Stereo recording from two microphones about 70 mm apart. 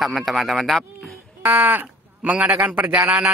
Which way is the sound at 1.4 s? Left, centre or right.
Right.